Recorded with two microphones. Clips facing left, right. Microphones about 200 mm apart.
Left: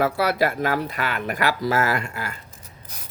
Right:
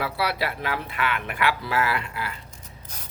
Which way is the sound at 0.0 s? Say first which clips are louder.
Left 6 dB; 45° left (ahead or behind).